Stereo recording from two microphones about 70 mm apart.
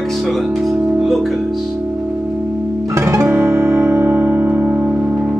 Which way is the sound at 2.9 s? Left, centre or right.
Right.